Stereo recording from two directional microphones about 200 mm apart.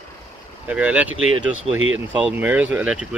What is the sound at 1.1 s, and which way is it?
Speech, 90° right.